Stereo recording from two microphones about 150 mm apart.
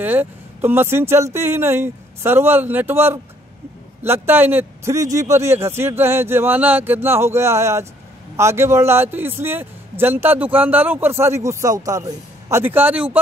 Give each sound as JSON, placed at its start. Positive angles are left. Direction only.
{"t": 0.0, "sound": "a man's voice", "side_deg": -15}